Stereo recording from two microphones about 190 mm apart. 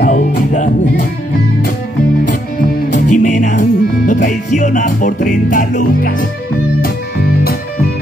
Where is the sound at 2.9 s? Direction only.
40° left (ahead or behind).